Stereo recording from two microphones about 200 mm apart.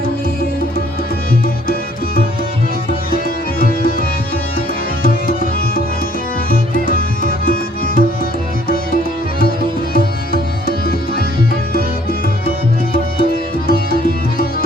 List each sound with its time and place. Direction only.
5.0 s music: 45° left (ahead or behind)
9.9 s music: 50° left (ahead or behind)
13.7 s music: 50° left (ahead or behind)